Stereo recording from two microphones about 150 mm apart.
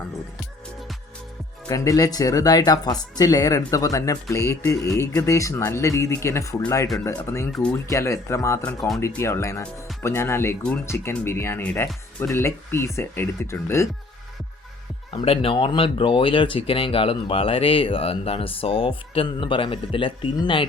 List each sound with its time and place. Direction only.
1.6 s speech: 25° left (ahead or behind)
7.5 s speech: 5° left (ahead or behind)
7.9 s speech: 20° left (ahead or behind)
15.1 s speech: 40° left (ahead or behind)